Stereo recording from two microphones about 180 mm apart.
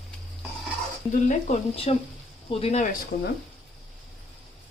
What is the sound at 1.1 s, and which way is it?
Speech, 40° left (ahead or behind).